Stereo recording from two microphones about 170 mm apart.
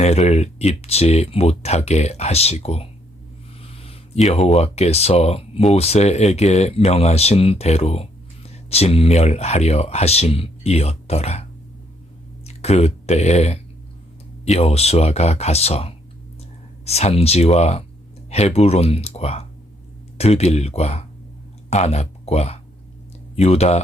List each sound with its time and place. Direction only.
0.0 s speech: 40° left (ahead or behind)
12.5 s speech: 40° left (ahead or behind)